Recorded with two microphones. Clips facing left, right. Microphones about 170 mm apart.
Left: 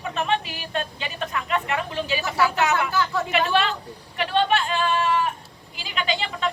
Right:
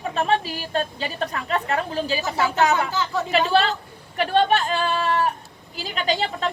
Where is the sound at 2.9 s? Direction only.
15° right (ahead or behind).